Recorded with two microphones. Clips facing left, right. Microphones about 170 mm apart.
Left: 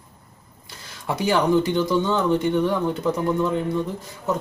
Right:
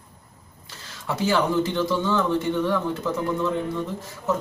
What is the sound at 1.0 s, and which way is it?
Speech, 15° left (ahead or behind).